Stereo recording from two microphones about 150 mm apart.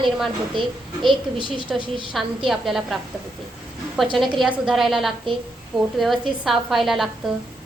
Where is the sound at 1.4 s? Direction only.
30° right (ahead or behind).